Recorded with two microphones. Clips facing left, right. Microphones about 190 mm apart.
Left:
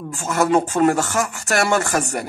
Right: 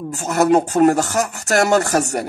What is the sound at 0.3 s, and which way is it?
A man's voice, 40° right (ahead or behind).